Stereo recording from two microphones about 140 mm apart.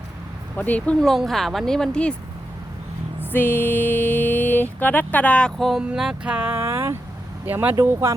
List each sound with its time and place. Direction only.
0.5 s speech: 10° left (ahead or behind)
3.2 s speech: 15° left (ahead or behind); by 8.1 s 20° right (ahead or behind)